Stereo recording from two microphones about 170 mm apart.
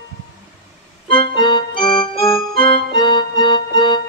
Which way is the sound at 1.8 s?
30° left (ahead or behind).